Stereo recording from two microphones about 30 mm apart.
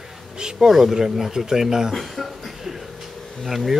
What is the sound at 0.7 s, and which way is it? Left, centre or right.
Speech, centre.